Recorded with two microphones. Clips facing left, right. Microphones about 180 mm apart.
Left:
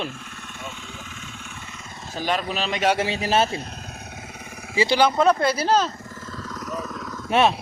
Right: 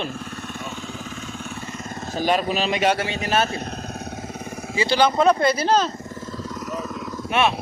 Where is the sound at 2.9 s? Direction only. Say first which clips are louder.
Left 1 dB; 30° left (ahead or behind).